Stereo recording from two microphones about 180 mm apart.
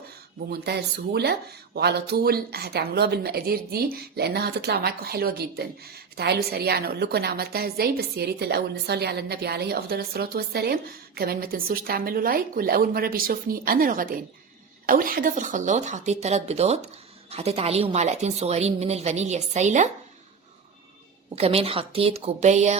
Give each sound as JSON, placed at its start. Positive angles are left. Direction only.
{"t": 0.5, "sound": "a woman's voice", "side_deg": -65}
{"t": 21.3, "sound": "a woman's voice", "side_deg": -35}